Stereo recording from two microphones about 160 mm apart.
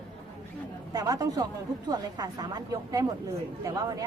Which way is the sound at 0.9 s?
20° right (ahead or behind).